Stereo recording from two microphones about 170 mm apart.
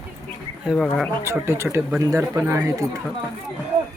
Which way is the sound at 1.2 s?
15° right (ahead or behind).